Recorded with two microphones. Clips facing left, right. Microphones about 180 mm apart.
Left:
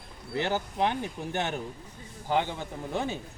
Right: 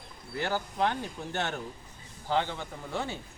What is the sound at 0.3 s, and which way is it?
Speech, 20° left (ahead or behind).